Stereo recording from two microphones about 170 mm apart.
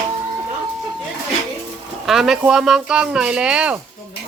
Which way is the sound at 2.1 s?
Centre (ahead or behind).